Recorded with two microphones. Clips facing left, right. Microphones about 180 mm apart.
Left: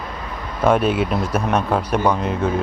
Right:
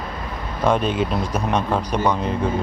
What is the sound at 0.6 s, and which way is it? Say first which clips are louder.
Speech: left 3 dB; 5° left (ahead or behind).